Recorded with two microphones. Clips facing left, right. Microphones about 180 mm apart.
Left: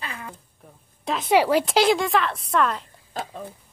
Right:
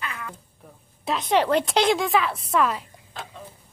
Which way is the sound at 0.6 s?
Centre (ahead or behind).